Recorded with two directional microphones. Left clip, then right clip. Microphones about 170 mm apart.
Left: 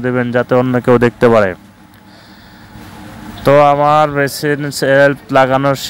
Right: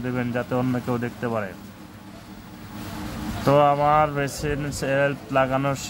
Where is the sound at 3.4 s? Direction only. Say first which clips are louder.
Left 10 dB; 50° left (ahead or behind).